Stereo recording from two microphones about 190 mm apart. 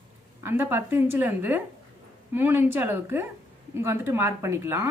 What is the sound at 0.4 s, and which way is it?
Speech, 10° right (ahead or behind).